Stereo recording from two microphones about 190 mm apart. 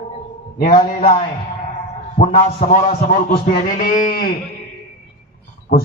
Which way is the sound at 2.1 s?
35° left (ahead or behind).